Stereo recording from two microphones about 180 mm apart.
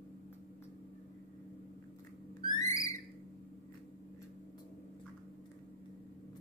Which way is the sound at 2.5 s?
20° left (ahead or behind).